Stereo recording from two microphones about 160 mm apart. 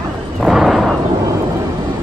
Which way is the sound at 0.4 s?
Centre (ahead or behind).